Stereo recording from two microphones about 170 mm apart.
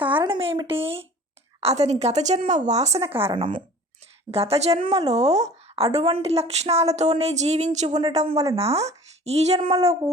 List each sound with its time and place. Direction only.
0.0 s a sound: 30° right (ahead or behind)
1.6 s a woman's voice: 40° right (ahead or behind)
7.9 s speech: 25° right (ahead or behind)
8.1 s a woman's voice: 40° right (ahead or behind)